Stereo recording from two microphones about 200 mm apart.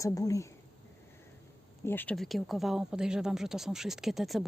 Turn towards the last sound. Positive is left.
turn(degrees=0)  # may be behind; listen again after turning